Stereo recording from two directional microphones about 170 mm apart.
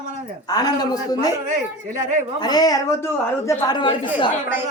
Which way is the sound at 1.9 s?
50° right (ahead or behind).